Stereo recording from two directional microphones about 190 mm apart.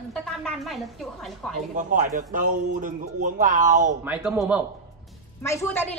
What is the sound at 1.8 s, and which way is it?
Speech, 40° right (ahead or behind).